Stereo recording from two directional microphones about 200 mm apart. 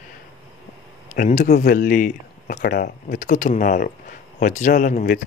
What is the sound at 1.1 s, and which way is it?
Speech, 45° left (ahead or behind).